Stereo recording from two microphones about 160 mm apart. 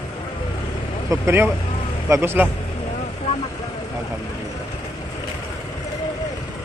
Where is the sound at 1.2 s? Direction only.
15° right (ahead or behind).